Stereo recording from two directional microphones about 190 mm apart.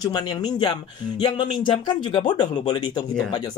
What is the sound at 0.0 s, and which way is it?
Speech, 20° left (ahead or behind).